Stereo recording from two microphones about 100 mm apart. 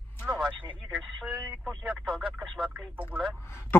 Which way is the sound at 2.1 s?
Centre (ahead or behind).